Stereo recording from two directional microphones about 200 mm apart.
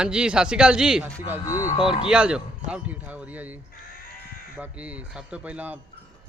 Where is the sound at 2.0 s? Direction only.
5° right (ahead or behind).